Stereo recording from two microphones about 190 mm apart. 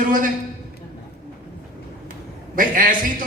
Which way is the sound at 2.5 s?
45° right (ahead or behind).